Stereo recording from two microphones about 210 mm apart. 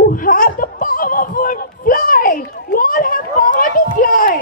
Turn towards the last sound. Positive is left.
turn(degrees=40)  # may be behind; listen again after turning